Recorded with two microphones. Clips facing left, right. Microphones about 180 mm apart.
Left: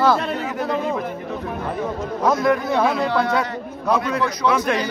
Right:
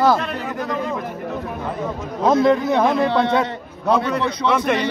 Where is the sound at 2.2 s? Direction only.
25° right (ahead or behind).